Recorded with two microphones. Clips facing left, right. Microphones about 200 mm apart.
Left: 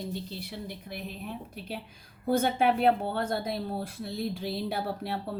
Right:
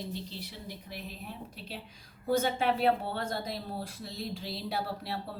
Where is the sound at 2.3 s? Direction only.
55° left (ahead or behind).